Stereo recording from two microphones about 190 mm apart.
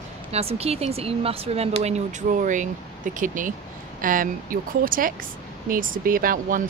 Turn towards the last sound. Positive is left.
turn(degrees=-45)  # may be behind; listen again after turning